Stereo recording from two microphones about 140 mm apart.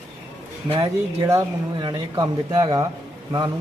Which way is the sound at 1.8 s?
35° right (ahead or behind).